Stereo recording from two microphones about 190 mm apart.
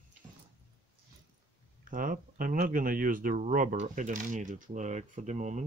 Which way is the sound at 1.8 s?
45° right (ahead or behind).